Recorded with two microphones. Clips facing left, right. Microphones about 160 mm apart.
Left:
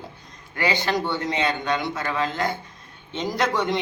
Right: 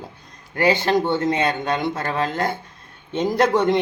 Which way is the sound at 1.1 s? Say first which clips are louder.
Right 4 dB; 50° right (ahead or behind).